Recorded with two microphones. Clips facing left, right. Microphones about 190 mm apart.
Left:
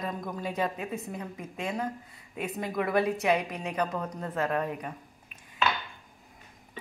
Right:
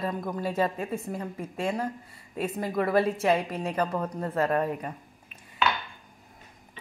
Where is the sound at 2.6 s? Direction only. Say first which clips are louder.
Right 2 dB; centre (ahead or behind).